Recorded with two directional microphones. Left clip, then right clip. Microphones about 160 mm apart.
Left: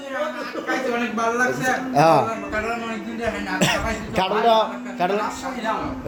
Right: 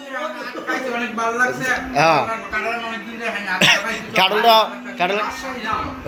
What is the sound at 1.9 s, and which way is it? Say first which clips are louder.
Speech: even; 25° left (ahead or behind).